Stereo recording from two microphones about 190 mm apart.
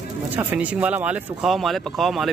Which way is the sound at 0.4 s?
10° right (ahead or behind).